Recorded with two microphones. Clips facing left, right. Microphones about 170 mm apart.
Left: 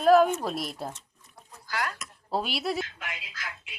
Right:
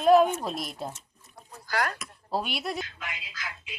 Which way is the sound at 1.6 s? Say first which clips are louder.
Right 3 dB; 45° right (ahead or behind).